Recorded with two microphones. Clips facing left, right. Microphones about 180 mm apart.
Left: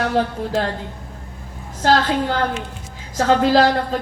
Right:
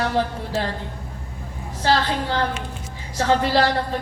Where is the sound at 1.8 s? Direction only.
50° left (ahead or behind).